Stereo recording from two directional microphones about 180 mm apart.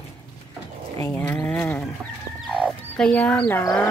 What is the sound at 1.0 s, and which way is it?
Speech, 10° left (ahead or behind).